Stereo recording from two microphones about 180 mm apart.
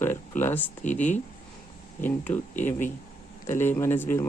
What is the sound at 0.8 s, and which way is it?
Speech, 45° left (ahead or behind).